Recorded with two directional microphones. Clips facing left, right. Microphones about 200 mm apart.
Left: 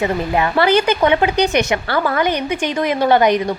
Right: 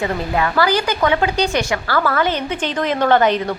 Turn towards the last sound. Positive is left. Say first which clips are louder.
# left 1 dB
turn(degrees=15)  # may be behind; listen again after turning